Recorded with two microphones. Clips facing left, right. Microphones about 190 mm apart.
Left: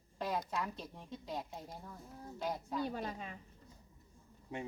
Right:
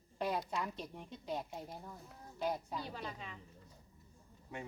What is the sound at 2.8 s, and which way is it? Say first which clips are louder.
Speech: left 6 dB; 50° left (ahead or behind).